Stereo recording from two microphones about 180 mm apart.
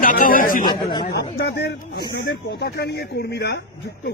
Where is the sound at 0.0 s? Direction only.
50° left (ahead or behind).